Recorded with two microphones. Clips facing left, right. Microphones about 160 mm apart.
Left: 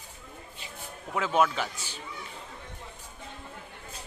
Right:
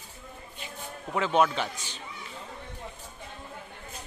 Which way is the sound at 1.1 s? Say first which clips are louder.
Right 1 dB; 5° left (ahead or behind).